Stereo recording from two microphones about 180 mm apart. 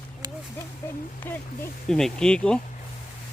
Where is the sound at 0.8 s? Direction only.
15° left (ahead or behind).